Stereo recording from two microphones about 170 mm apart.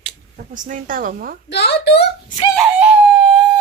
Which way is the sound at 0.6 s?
50° right (ahead or behind).